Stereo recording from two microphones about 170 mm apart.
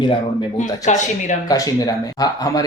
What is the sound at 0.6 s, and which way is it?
Speech, 45° left (ahead or behind).